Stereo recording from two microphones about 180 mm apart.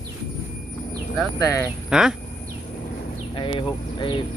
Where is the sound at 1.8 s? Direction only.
5° right (ahead or behind).